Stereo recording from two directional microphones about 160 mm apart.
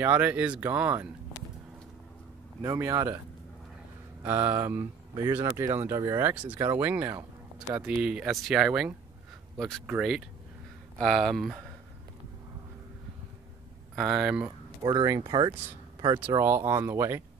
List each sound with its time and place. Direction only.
0.0 s speech: 10° right (ahead or behind)
2.6 s speech: 20° right (ahead or behind)
4.3 s speech: 15° right (ahead or behind)
5.1 s speech: 25° right (ahead or behind); by 11.6 s centre (ahead or behind)
13.9 s speech: 5° right (ahead or behind)
14.8 s speech: 25° right (ahead or behind)
16.3 s speech: 15° right (ahead or behind)